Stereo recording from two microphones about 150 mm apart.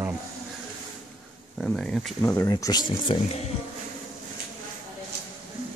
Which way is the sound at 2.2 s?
20° left (ahead or behind).